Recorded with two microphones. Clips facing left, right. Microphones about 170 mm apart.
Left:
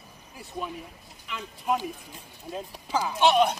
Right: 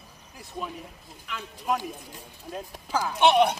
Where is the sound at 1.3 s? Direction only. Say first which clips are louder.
Left 1 dB; 10° left (ahead or behind).